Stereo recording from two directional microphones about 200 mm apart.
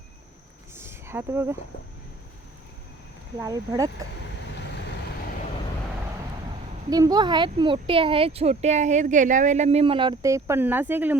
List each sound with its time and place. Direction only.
0.8 s a sound: 10° right (ahead or behind)
3.4 s speech: 15° right (ahead or behind)
6.9 s speech: 20° right (ahead or behind)